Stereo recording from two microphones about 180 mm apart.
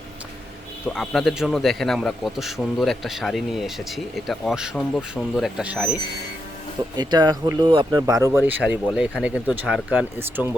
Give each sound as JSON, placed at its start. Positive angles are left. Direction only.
{"t": 0.9, "sound": "a man's voice", "side_deg": 0}
{"t": 6.9, "sound": "speech", "side_deg": -25}